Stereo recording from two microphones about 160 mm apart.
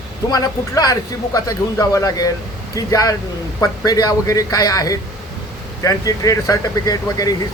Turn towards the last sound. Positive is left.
turn(degrees=25)  # may be behind; listen again after turning